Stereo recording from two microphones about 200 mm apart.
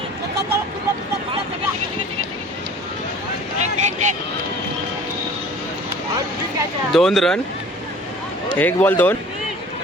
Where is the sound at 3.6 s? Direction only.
35° right (ahead or behind).